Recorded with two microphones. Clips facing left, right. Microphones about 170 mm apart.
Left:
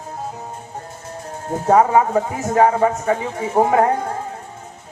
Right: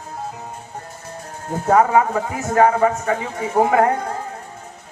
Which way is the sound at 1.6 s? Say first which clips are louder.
Left 1 dB; 25° left (ahead or behind).